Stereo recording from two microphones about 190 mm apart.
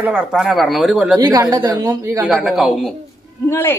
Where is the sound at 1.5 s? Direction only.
20° right (ahead or behind).